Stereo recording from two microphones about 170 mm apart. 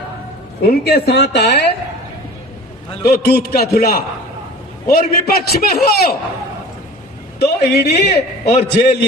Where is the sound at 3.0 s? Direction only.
70° left (ahead or behind).